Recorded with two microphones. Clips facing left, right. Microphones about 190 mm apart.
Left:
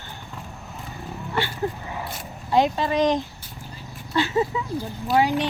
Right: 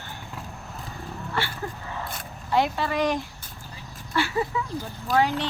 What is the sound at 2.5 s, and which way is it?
Speech, 15° left (ahead or behind).